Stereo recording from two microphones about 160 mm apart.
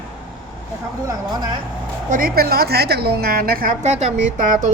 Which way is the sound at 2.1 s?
65° right (ahead or behind).